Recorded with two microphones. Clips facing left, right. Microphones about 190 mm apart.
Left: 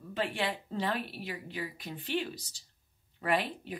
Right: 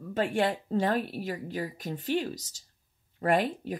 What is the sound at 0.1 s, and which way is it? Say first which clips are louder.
Speech: right 6 dB; 45° right (ahead or behind).